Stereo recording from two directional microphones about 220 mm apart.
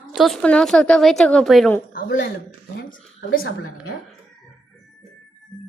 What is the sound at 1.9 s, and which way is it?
A woman's voice, 40° left (ahead or behind).